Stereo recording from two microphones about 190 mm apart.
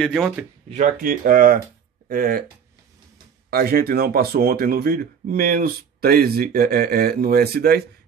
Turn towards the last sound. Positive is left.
turn(degrees=-55)  # may be behind; listen again after turning